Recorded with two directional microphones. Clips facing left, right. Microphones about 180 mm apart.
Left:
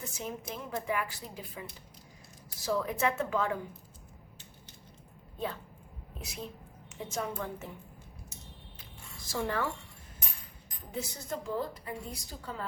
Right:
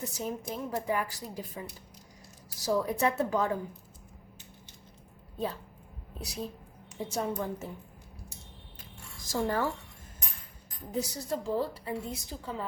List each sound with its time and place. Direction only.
0.1 s a woman's voice: 40° right (ahead or behind)
6.1 s a woman's voice: 35° right (ahead or behind)
9.2 s speech: 40° right (ahead or behind)
10.9 s a woman's voice: 35° right (ahead or behind)